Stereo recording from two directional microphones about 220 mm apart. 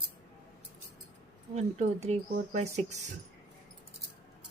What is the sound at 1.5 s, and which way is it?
Speech, 30° right (ahead or behind).